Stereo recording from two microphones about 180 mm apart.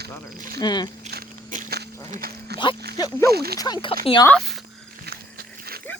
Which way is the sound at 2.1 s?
55° right (ahead or behind).